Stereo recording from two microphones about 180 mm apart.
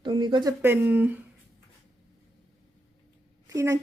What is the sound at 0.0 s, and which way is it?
Speech, 25° right (ahead or behind).